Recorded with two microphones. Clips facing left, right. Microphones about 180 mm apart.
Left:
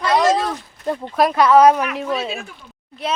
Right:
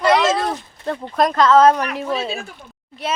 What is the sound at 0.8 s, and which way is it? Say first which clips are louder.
A woman's voice: left 1 dB; 5° left (ahead or behind).